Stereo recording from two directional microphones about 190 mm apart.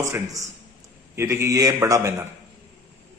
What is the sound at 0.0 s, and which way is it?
A man's voice, 15° right (ahead or behind).